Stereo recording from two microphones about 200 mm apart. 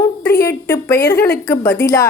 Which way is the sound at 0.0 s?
10° left (ahead or behind).